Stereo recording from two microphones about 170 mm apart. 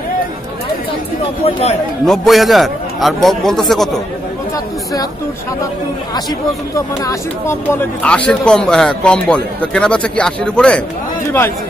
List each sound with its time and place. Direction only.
1.4 s speech: 40° left (ahead or behind)
2.0 s speech: centre (ahead or behind)
6.7 s speech: 15° left (ahead or behind)